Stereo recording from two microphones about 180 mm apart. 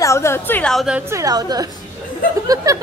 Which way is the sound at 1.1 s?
20° right (ahead or behind).